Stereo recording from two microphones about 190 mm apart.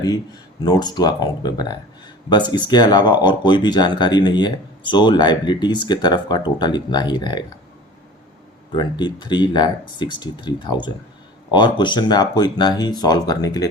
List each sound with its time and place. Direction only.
0.6 s speech: 20° left (ahead or behind)
8.7 s speech: 25° left (ahead or behind)